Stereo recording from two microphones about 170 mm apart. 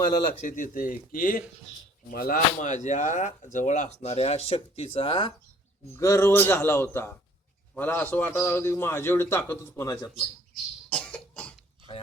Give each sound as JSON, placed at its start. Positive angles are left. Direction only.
{"t": 0.4, "sound": "speech", "side_deg": 50}
{"t": 5.9, "sound": "a man's voice", "side_deg": 15}
{"t": 10.2, "sound": "cough", "side_deg": 5}